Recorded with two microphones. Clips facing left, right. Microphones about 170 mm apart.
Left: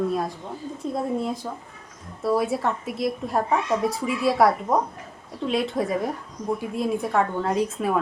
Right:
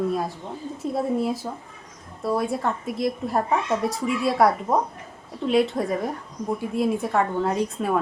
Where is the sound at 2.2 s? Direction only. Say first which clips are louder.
Left 1 dB; centre (ahead or behind).